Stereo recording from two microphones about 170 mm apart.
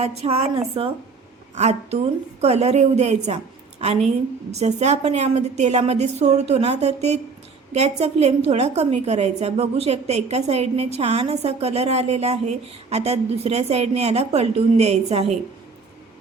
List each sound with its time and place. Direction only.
0.0 s a woman's voice: 35° right (ahead or behind)